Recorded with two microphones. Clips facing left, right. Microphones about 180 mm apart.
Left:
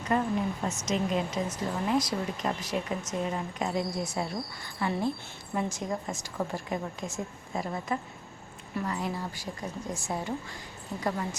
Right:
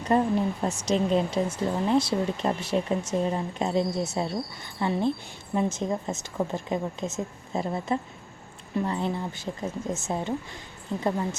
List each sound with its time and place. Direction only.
0.0 s speech: 35° right (ahead or behind)